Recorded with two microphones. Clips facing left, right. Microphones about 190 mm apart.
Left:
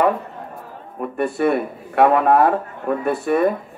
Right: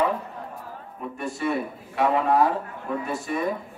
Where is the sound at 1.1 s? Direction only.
60° left (ahead or behind).